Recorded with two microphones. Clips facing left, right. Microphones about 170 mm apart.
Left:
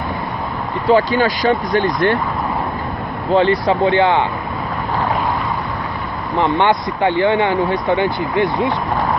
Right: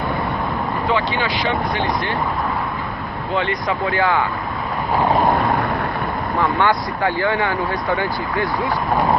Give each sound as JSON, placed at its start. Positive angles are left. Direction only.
{"t": 0.8, "sound": "speech", "side_deg": 40}
{"t": 3.3, "sound": "speech", "side_deg": 30}
{"t": 6.4, "sound": "speech", "side_deg": 25}